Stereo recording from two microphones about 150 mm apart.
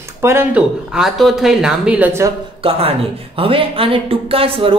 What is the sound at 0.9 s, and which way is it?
A woman's voice, centre (ahead or behind).